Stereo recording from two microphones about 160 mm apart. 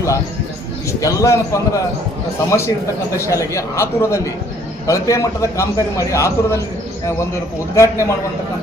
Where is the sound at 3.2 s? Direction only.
20° left (ahead or behind).